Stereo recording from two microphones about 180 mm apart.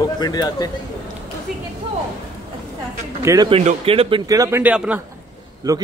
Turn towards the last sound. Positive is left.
turn(degrees=-20)  # may be behind; listen again after turning